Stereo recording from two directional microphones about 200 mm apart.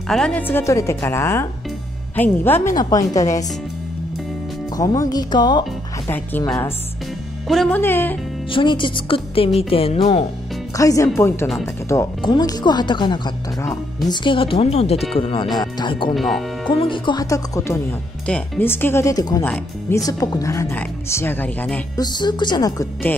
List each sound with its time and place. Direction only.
0.1 s speech: 5° left (ahead or behind)
4.7 s speech: 15° left (ahead or behind)
6.1 s speech: 10° left (ahead or behind)
8.5 s speech: 25° left (ahead or behind)
10.8 s speech: 15° left (ahead or behind)
16.2 s speech: centre (ahead or behind)
16.8 s speech: 25° left (ahead or behind); by 21.8 s 10° left (ahead or behind)
21.9 s speech: 20° left (ahead or behind)